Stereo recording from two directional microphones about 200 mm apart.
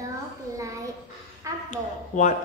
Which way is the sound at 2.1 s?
40° left (ahead or behind).